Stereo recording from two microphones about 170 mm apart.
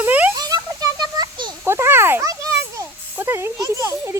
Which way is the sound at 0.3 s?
20° right (ahead or behind).